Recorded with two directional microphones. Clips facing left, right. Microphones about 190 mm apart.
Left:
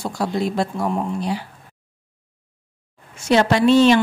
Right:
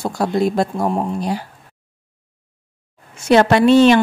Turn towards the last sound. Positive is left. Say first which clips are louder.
# right 3 dB
turn(degrees=-55)  # may be behind; listen again after turning